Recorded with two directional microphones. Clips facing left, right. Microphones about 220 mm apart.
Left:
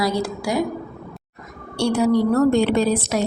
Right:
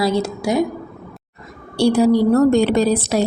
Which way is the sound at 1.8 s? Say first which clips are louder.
Right 4 dB; 35° right (ahead or behind).